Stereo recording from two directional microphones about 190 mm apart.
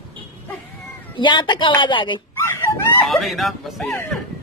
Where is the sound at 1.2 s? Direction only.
25° left (ahead or behind).